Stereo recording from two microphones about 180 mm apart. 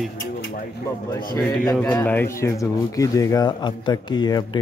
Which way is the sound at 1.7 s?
15° left (ahead or behind).